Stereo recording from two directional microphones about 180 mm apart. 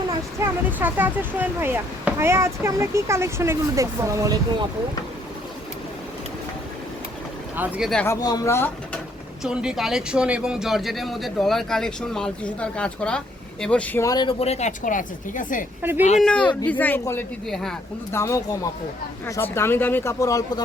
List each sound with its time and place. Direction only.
0.3 s speech: 10° right (ahead or behind)
7.5 s speech: 10° right (ahead or behind)
8.0 s speech: 20° left (ahead or behind)
9.4 s speech: 5° right (ahead or behind); by 15.6 s 50° left (ahead or behind)
15.8 s speech: 10° right (ahead or behind)
16.1 s speech: 5° left (ahead or behind)
18.1 s speech: 15° left (ahead or behind)